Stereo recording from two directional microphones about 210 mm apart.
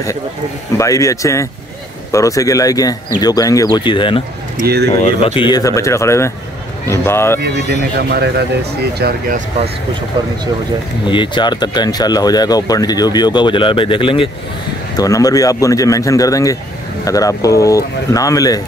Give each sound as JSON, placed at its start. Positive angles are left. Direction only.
{"t": 0.7, "sound": "speech", "side_deg": 15}
{"t": 8.1, "sound": "speech", "side_deg": -50}
{"t": 11.1, "sound": "speech", "side_deg": 20}